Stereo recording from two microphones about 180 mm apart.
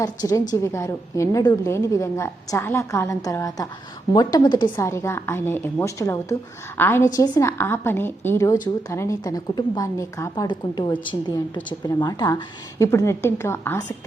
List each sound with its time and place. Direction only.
0.0 s a woman's voice: 20° left (ahead or behind)